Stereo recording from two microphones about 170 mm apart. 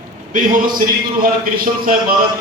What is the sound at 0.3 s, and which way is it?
A man's voice, 55° right (ahead or behind).